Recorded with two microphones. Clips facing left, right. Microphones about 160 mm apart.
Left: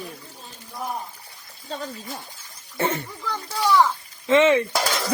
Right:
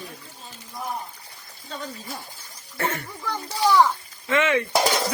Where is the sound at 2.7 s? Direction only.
20° left (ahead or behind).